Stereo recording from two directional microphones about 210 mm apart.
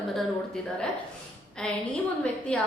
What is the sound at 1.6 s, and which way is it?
Speech, 5° left (ahead or behind).